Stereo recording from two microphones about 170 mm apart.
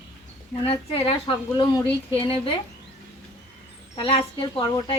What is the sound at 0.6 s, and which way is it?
Speech, 35° left (ahead or behind).